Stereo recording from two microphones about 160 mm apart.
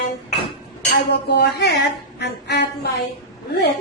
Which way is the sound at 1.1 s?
90° left.